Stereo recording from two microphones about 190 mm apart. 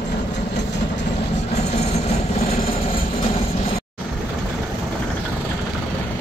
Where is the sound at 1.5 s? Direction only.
35° left (ahead or behind).